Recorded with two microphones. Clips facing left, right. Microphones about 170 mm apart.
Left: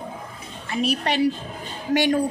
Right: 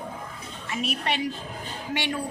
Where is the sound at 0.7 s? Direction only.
40° left (ahead or behind).